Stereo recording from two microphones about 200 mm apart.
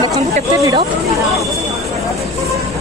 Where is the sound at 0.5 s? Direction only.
15° right (ahead or behind).